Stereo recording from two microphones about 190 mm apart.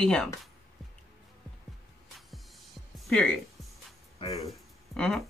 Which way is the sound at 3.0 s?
5° left (ahead or behind).